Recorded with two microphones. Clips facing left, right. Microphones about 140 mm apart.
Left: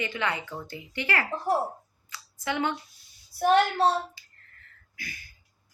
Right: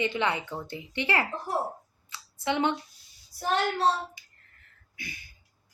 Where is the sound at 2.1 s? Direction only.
25° right (ahead or behind).